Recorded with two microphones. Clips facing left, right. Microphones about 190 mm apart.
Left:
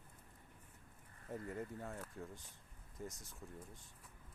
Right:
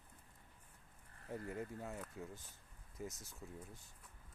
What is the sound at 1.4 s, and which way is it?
Speech, centre (ahead or behind).